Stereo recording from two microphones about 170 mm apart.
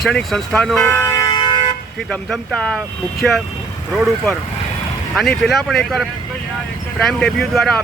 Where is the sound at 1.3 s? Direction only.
25° left (ahead or behind).